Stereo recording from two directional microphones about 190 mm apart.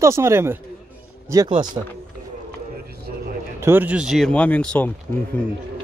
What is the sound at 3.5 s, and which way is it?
A man's voice, 10° right (ahead or behind).